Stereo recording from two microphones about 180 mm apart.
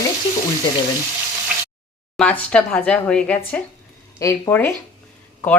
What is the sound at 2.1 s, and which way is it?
Speech, 5° left (ahead or behind).